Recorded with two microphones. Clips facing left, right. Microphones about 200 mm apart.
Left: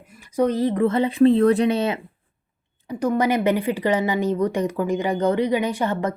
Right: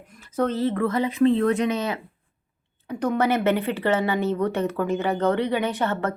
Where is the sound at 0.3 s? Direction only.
15° left (ahead or behind).